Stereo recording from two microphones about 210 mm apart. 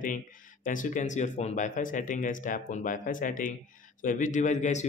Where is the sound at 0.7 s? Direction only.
40° left (ahead or behind).